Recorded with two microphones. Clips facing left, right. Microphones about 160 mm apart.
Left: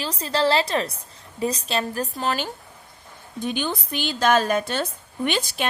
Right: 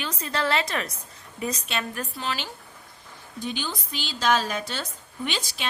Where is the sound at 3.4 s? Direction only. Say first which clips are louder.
Left 5 dB; 55° left (ahead or behind).